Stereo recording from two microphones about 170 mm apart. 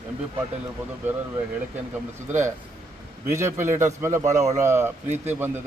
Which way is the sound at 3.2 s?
15° right (ahead or behind).